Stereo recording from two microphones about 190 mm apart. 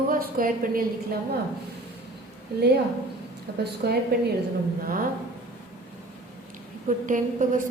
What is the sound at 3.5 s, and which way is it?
Speech, 65° right (ahead or behind).